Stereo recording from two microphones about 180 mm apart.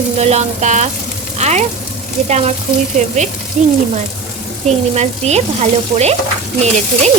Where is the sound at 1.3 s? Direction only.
40° right (ahead or behind).